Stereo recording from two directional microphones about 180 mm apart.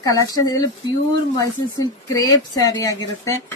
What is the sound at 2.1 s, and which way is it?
Speech, 20° left (ahead or behind).